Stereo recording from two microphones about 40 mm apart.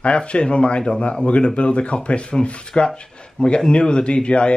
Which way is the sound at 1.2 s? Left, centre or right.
Left.